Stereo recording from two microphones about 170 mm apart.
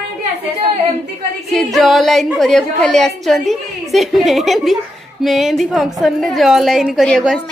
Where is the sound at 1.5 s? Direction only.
Centre (ahead or behind).